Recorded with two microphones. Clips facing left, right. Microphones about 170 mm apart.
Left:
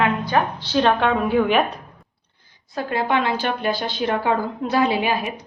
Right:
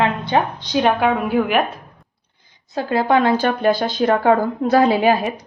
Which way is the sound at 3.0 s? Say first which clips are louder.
Right 6 dB; 45° right (ahead or behind).